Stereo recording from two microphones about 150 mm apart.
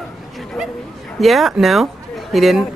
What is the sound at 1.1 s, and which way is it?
Speech, centre (ahead or behind).